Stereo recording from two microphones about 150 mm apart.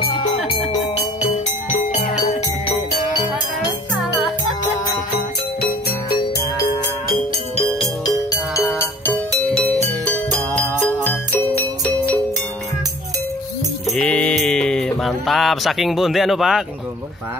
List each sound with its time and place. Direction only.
5.6 s music: 90° left
8.0 s music: 25° left (ahead or behind)
9.0 s music: 15° left (ahead or behind)
13.8 s mantra: 5° left (ahead or behind)